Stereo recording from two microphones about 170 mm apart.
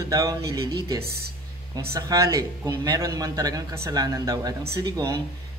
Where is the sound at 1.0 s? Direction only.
70° right (ahead or behind).